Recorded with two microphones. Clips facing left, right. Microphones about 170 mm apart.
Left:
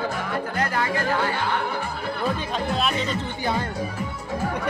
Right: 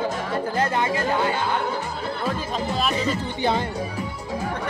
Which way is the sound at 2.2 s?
Centre (ahead or behind).